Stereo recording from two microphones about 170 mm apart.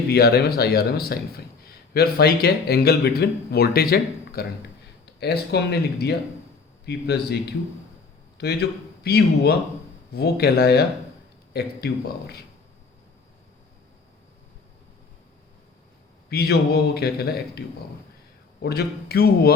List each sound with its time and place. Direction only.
0.1 s speech: 70° left (ahead or behind)
5.2 s a man's voice: 75° left (ahead or behind)
16.3 s speech: 70° left (ahead or behind)
18.6 s speech: 70° left (ahead or behind)